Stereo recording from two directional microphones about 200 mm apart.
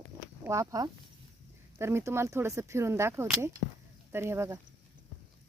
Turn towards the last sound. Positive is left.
turn(degrees=-15)  # may be behind; listen again after turning